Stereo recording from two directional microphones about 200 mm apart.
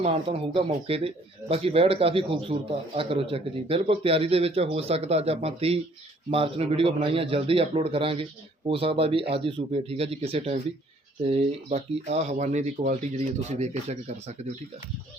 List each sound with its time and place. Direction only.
0.0 s speech: 30° right (ahead or behind)